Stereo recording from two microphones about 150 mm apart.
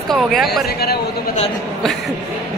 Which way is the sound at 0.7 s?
90° left.